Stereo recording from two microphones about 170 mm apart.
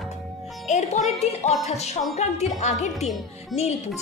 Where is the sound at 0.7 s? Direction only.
40° left (ahead or behind).